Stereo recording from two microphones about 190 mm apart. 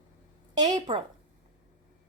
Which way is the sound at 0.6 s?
20° right (ahead or behind).